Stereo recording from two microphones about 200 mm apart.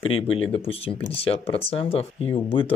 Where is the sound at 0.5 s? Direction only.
30° left (ahead or behind).